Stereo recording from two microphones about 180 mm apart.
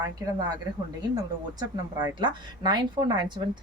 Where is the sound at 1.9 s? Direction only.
20° right (ahead or behind).